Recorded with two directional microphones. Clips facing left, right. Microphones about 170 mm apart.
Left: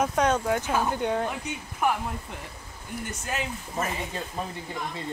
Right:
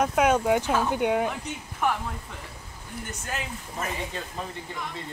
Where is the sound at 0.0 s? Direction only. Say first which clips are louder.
Right 2 dB; 5° right (ahead or behind).